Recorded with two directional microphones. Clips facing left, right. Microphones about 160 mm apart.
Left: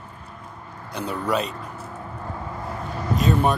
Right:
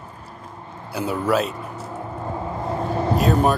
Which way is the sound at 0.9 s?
5° right (ahead or behind).